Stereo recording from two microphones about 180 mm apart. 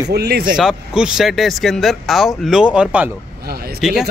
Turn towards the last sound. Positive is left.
turn(degrees=-5)  # may be behind; listen again after turning